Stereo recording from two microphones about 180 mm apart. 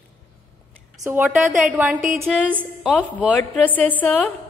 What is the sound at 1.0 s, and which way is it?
A woman's voice, 10° right (ahead or behind).